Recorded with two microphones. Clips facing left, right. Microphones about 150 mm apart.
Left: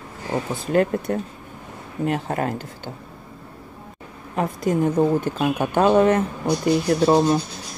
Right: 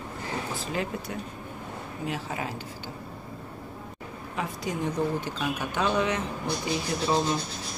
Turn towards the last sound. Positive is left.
turn(degrees=60)  # may be behind; listen again after turning